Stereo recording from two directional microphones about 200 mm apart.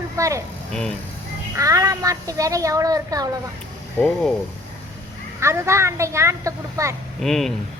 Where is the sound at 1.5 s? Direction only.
15° right (ahead or behind).